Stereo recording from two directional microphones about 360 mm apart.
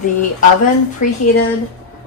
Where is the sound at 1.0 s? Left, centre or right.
Left.